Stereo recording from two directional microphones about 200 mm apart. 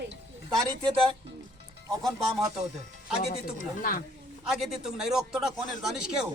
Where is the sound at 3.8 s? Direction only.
45° left (ahead or behind).